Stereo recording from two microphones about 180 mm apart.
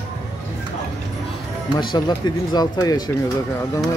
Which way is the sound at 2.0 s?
25° left (ahead or behind).